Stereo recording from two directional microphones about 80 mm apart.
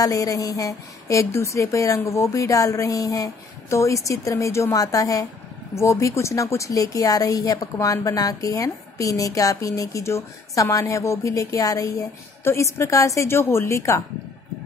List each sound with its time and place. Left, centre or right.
0.0 s a woman's voice: left